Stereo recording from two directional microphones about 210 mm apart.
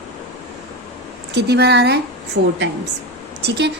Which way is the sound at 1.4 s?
50° right (ahead or behind).